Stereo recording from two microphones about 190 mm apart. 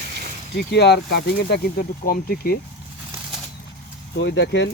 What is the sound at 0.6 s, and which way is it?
Speech, 60° left (ahead or behind).